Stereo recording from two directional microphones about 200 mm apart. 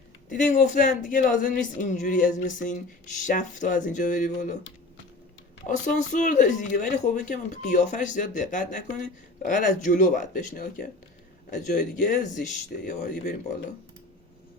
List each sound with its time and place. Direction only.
0.3 s speech: 40° left (ahead or behind)
5.6 s speech: 40° left (ahead or behind)
11.9 s speech: 40° left (ahead or behind)